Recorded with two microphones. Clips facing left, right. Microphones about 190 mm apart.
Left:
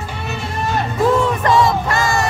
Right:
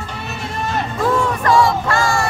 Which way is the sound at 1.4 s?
20° left (ahead or behind).